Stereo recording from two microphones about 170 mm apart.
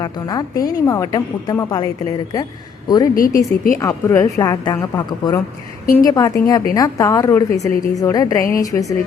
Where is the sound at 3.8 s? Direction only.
20° left (ahead or behind).